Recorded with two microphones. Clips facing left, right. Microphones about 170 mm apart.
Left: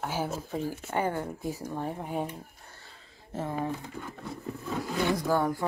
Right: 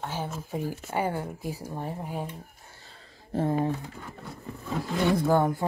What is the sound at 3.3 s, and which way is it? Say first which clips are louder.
Speech: right 7 dB; 30° right (ahead or behind).